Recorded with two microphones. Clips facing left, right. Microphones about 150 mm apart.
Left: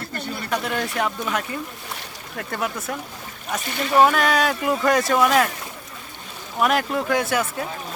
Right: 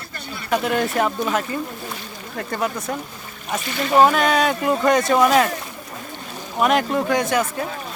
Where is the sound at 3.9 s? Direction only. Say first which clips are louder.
Right 2 dB; 25° right (ahead or behind).